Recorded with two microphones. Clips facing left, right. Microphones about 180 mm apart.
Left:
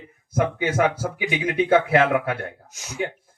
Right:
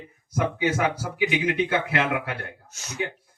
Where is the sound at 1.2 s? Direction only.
55° left (ahead or behind).